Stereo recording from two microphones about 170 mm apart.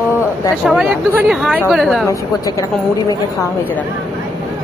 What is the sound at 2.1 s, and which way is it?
Speech, 20° left (ahead or behind).